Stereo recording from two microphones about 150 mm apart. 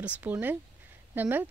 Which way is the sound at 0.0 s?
10° right (ahead or behind).